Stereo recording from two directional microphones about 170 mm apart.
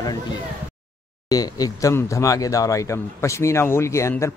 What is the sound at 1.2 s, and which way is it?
Speech, 20° left (ahead or behind).